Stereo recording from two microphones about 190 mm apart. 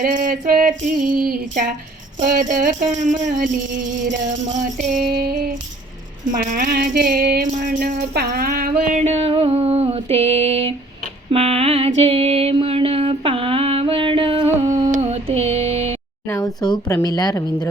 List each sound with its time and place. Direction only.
0.0 s music: 45° right (ahead or behind)
4.8 s music: 50° right (ahead or behind)
9.0 s a sound: 35° right (ahead or behind)
11.3 s music: 30° right (ahead or behind)
15.0 s a sound: 35° right (ahead or behind)
16.3 s a woman's voice: 20° left (ahead or behind)